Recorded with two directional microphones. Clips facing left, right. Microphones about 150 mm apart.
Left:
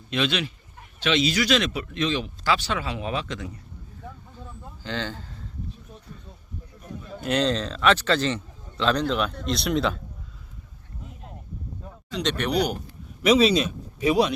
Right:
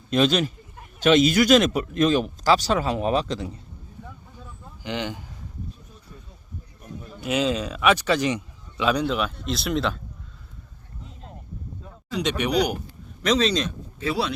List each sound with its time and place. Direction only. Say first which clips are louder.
0.1 s speech: right 6 dB; 40° right (ahead or behind)
4.8 s speech: right 2 dB; 15° right (ahead or behind)
7.3 s speech: even; 5° right (ahead or behind)
12.1 s speech: right 2 dB; 10° right (ahead or behind)
13.2 s speech: left 3 dB; 10° left (ahead or behind)